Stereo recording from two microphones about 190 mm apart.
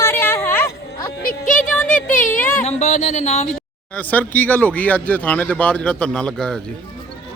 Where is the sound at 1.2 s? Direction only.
45° left (ahead or behind).